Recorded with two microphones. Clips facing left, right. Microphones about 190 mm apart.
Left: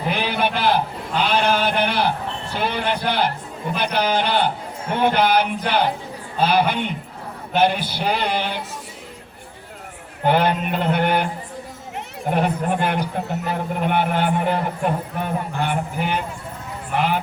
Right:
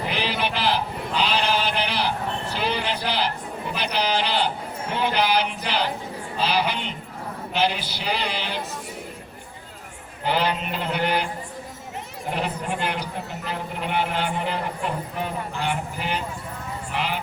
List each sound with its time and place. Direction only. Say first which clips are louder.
0.1 s sheep: left 7 dB; 55° left (ahead or behind)
2.6 s a man's voice: left 5 dB; 55° left (ahead or behind)
10.2 s a man's voice: left 5 dB; 55° left (ahead or behind)